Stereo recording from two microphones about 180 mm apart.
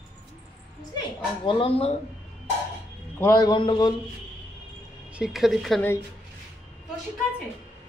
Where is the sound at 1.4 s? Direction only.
30° left (ahead or behind).